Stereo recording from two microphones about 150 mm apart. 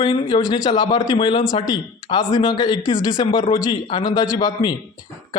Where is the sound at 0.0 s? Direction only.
35° left (ahead or behind).